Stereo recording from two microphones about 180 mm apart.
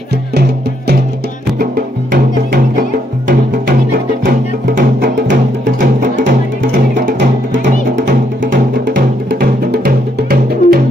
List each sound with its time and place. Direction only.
0.3 s music: 65° right (ahead or behind)
2.1 s music: 50° right (ahead or behind)